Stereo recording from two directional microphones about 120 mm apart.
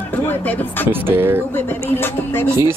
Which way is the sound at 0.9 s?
20° right (ahead or behind).